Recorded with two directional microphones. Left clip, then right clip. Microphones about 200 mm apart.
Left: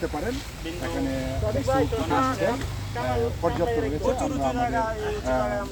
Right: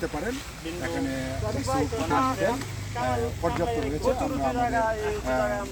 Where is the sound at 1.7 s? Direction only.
40° right (ahead or behind).